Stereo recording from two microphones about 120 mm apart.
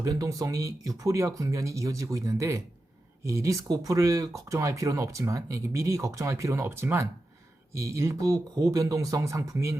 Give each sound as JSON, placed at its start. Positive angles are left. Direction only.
{"t": 0.0, "sound": "speech", "side_deg": -30}